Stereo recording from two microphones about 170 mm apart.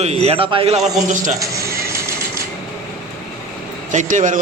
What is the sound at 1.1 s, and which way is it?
Speech, 50° right (ahead or behind).